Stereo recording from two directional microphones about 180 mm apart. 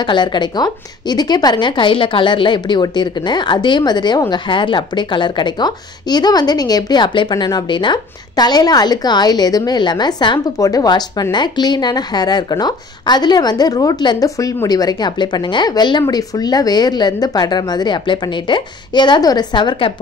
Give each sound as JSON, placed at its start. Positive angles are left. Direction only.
{"t": 0.0, "sound": "a woman's voice", "side_deg": 25}